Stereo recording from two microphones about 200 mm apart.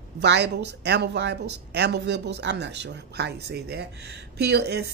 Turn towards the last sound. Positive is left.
turn(degrees=-55)  # may be behind; listen again after turning